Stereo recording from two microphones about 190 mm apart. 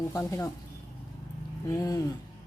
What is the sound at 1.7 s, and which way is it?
Speech, 20° left (ahead or behind).